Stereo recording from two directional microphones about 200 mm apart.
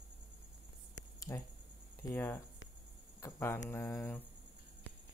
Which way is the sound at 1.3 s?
20° left (ahead or behind).